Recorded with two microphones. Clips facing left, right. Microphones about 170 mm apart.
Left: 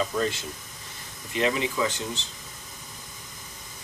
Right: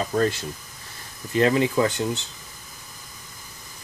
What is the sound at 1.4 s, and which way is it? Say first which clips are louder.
Speech: right 6 dB; 55° right (ahead or behind).